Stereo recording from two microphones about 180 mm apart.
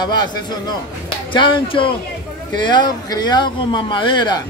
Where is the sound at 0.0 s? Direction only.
25° left (ahead or behind).